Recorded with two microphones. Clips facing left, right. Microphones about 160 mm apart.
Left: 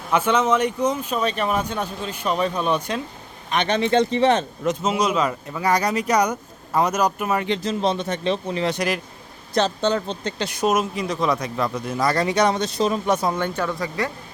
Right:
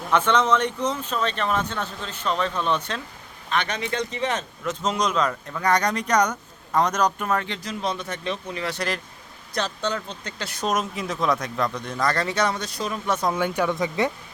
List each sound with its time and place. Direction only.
0.1 s speech: 10° left (ahead or behind)
3.5 s speech: 25° left (ahead or behind)
4.8 s speech: 5° left (ahead or behind); by 8.7 s 30° left (ahead or behind)
8.7 s speech: 15° left (ahead or behind)
9.6 s speech: 25° left (ahead or behind)
13.3 s speech: 10° right (ahead or behind)